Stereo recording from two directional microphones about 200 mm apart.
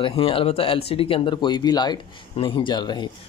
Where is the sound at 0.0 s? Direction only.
30° left (ahead or behind).